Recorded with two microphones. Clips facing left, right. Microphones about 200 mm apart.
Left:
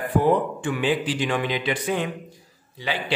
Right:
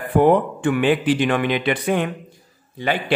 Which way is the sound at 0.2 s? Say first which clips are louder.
Right 8 dB; 60° right (ahead or behind).